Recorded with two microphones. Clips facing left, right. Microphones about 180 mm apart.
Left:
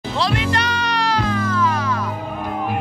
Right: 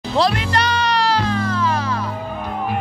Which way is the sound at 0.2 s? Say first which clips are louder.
Right 2 dB; 40° right (ahead or behind).